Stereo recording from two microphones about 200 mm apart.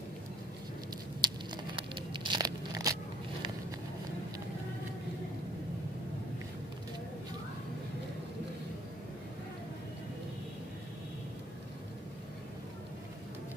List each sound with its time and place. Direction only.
1.2 s tearing: 25° right (ahead or behind)